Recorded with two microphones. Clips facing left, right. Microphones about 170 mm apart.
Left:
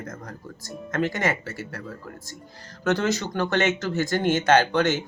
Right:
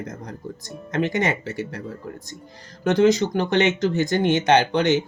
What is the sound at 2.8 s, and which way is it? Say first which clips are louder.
Speech: right 7 dB; 15° right (ahead or behind).